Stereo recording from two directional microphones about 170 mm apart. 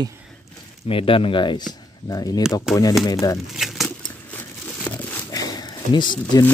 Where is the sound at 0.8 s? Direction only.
30° left (ahead or behind).